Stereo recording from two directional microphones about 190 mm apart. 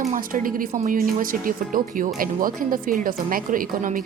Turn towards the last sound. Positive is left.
turn(degrees=-45)  # may be behind; listen again after turning